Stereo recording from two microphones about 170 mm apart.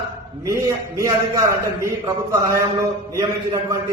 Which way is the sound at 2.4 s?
20° right (ahead or behind).